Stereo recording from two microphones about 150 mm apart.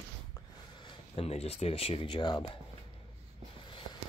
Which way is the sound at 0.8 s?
40° left (ahead or behind).